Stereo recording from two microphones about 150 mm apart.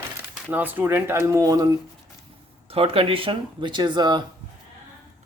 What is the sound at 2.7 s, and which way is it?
Speech, 40° right (ahead or behind).